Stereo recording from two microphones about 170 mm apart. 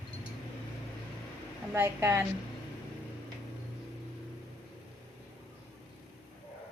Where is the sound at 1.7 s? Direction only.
15° right (ahead or behind).